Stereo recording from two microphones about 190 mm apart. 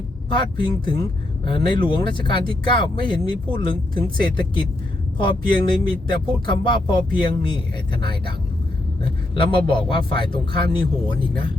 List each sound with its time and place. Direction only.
0.3 s speech: 25° left (ahead or behind)
9.3 s speech: 25° left (ahead or behind)